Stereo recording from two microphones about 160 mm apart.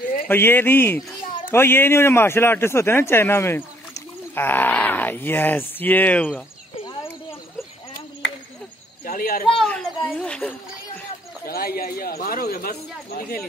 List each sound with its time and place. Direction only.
0.3 s a man's voice: 15° left (ahead or behind)
9.0 s speech: 65° left (ahead or behind)
9.6 s a sound: 5° left (ahead or behind)
11.4 s speech: 70° left (ahead or behind)